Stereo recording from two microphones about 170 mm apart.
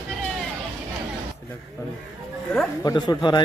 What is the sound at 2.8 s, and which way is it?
Speech, 20° left (ahead or behind).